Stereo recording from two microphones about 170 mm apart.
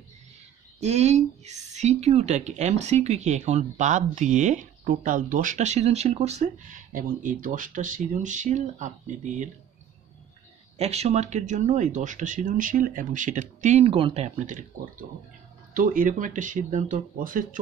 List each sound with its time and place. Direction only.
0.7 s speech: 40° right (ahead or behind)
10.8 s speech: 40° right (ahead or behind)